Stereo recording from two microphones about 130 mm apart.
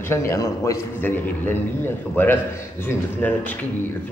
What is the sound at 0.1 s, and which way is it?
A man's voice, 20° left (ahead or behind).